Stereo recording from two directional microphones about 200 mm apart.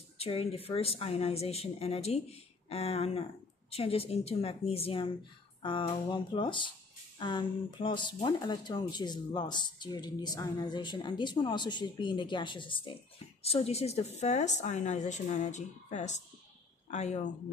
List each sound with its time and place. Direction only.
0.2 s a woman's voice: 30° left (ahead or behind)